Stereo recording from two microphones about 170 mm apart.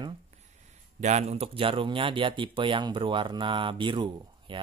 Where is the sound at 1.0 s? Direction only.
40° right (ahead or behind).